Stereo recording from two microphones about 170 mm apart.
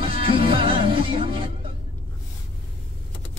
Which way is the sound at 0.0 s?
30° right (ahead or behind).